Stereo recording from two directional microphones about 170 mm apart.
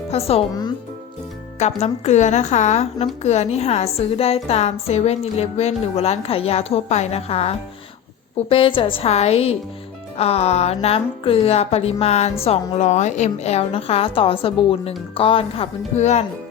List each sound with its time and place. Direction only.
0.1 s a woman's voice: 35° left (ahead or behind)
1.5 s a woman's voice: 40° left (ahead or behind)